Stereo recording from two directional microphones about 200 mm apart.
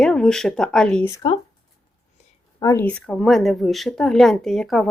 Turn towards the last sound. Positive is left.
turn(degrees=0)  # may be behind; listen again after turning